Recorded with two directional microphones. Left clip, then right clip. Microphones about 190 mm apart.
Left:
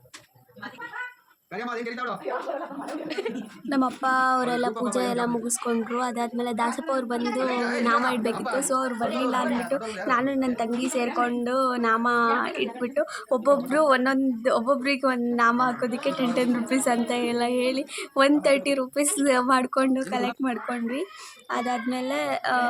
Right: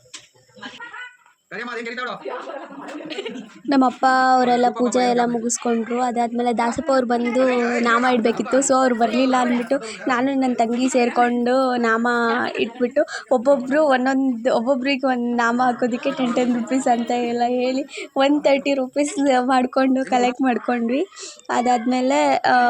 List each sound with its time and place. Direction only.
1.5 s a man's voice: 5° left (ahead or behind)
3.7 s a woman's voice: 30° right (ahead or behind)